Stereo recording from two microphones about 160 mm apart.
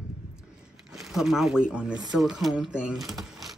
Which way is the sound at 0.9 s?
Centre (ahead or behind).